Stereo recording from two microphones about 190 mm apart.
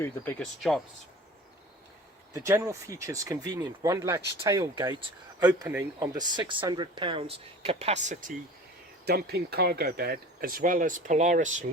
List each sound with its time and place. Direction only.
0.0 s speech: 10° left (ahead or behind)
2.3 s speech: 15° right (ahead or behind); by 8.3 s 40° right (ahead or behind)
9.0 s speech: 60° right (ahead or behind); by 11.6 s 40° right (ahead or behind)